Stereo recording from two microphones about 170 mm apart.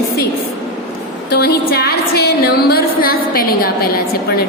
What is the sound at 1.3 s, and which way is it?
A woman's voice, 65° left (ahead or behind).